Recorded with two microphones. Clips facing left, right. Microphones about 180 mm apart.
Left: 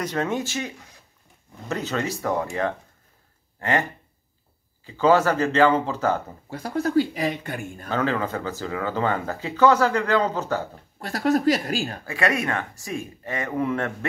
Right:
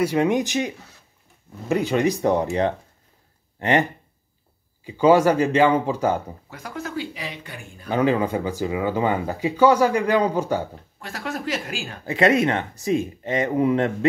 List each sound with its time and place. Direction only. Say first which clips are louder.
0.0 s speech: right 6 dB; 10° right (ahead or behind)
4.8 s speech: right 3 dB; 15° right (ahead or behind)
6.5 s speech: left 9 dB; 35° left (ahead or behind)
7.9 s speech: right 5 dB; 15° right (ahead or behind)
11.0 s speech: left 9 dB; 40° left (ahead or behind)
12.1 s speech: right 7 dB; 25° right (ahead or behind)